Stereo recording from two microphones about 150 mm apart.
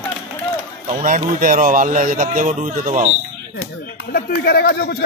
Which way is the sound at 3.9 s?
90° left.